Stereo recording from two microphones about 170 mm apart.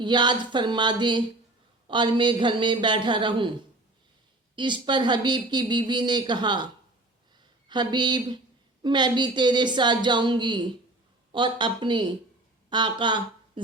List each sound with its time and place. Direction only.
0.0 s speech: 25° right (ahead or behind)
4.5 s speech: 25° right (ahead or behind)
7.7 s speech: 25° right (ahead or behind)